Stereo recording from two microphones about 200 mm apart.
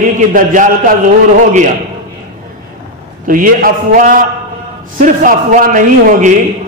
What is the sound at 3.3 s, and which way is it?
A man's voice, 45° right (ahead or behind).